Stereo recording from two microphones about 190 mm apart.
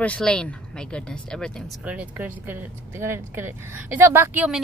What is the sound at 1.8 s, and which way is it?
Speech, 10° right (ahead or behind).